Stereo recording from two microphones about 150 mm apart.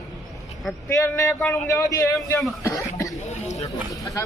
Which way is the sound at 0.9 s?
20° left (ahead or behind).